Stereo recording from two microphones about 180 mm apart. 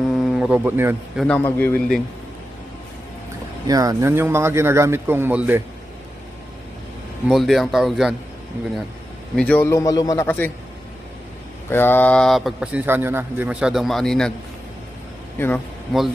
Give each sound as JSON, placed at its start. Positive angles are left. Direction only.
{"t": 0.1, "sound": "a sound", "side_deg": 0}
{"t": 1.1, "sound": "a man's voice", "side_deg": 5}
{"t": 3.6, "sound": "a man's voice", "side_deg": -20}
{"t": 7.2, "sound": "speech", "side_deg": 0}
{"t": 9.3, "sound": "a man's voice", "side_deg": 10}
{"t": 10.2, "sound": "a man's voice", "side_deg": 10}
{"t": 11.7, "sound": "speech", "side_deg": 10}
{"t": 15.3, "sound": "a man's voice", "side_deg": 10}